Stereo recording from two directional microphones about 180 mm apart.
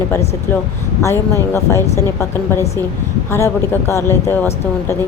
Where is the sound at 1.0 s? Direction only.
15° left (ahead or behind).